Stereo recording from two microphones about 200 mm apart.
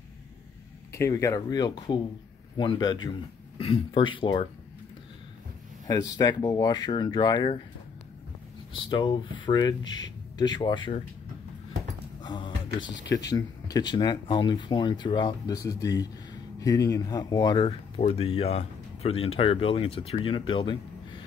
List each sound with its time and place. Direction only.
0.9 s speech: 15° left (ahead or behind)
5.9 s speech: 20° left (ahead or behind)
8.9 s speech: 25° left (ahead or behind)
12.2 s music: 25° left (ahead or behind)
12.8 s speech: 65° left (ahead or behind)
13.3 s speech: 20° left (ahead or behind)